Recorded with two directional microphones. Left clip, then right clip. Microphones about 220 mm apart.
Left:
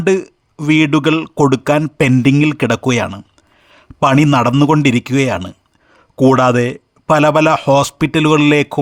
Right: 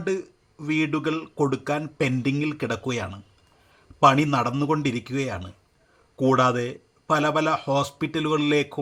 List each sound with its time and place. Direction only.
0.0 s speech: 45° left (ahead or behind)